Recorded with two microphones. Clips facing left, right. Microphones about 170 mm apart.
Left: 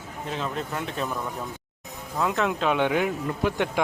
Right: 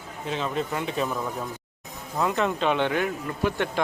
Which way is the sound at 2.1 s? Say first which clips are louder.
Even; centre (ahead or behind).